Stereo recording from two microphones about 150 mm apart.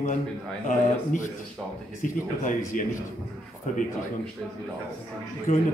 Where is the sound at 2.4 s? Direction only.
60° left (ahead or behind).